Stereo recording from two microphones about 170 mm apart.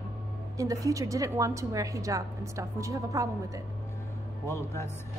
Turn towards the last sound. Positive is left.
turn(degrees=15)  # may be behind; listen again after turning